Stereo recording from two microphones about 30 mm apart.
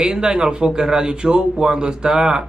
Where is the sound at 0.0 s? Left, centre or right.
Right.